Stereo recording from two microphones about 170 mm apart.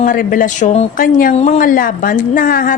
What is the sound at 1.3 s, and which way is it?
A woman's voice, 40° left (ahead or behind).